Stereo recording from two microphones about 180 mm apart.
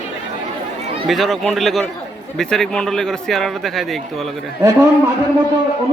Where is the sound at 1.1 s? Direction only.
Centre (ahead or behind).